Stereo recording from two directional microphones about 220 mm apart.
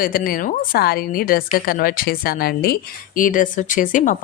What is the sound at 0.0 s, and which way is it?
A woman's voice, 40° left (ahead or behind).